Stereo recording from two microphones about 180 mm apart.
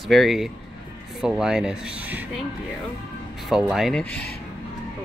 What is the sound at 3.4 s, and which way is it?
Speech, centre (ahead or behind).